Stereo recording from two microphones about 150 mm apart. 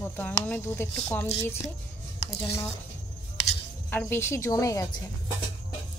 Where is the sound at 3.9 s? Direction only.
15° left (ahead or behind).